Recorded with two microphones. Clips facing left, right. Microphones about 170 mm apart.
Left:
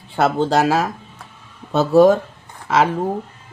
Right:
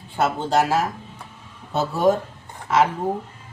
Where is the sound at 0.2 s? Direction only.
85° left.